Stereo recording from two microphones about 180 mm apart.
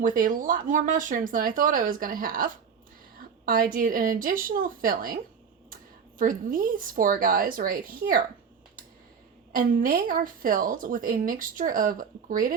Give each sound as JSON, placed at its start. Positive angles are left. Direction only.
{"t": 0.0, "sound": "speech", "side_deg": -45}
{"t": 9.5, "sound": "speech", "side_deg": -50}